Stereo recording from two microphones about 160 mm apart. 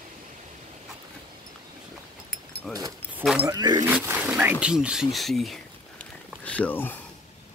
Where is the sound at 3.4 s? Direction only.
25° right (ahead or behind).